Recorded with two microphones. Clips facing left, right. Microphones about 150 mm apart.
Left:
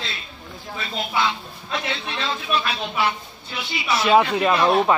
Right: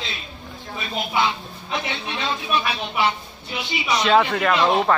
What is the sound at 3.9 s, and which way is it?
Speech, 10° left (ahead or behind).